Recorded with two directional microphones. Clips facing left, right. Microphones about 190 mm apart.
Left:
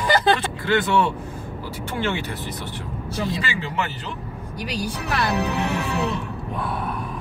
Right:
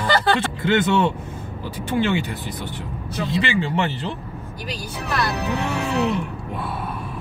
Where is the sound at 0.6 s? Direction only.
20° right (ahead or behind).